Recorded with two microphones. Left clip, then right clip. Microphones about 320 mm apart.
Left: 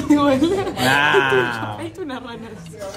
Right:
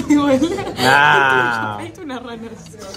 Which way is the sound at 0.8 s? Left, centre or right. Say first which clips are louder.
Right 5 dB; centre.